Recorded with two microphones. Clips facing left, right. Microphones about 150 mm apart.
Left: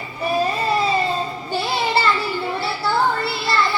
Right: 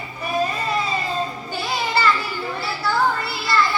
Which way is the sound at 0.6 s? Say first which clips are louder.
Left 5 dB; 30° left (ahead or behind).